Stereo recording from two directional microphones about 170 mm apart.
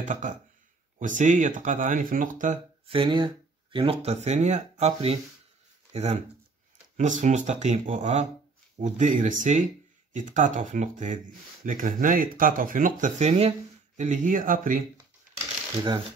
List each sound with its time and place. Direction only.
0.0 s speech: 50° right (ahead or behind)
2.9 s speech: 30° right (ahead or behind); by 14.8 s 50° right (ahead or behind)
15.0 s a sound: 25° right (ahead or behind)